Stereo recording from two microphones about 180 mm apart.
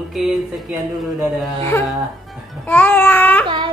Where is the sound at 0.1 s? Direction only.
Centre (ahead or behind).